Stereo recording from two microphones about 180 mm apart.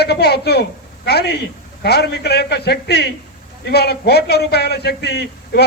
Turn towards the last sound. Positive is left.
turn(degrees=65)  # may be behind; listen again after turning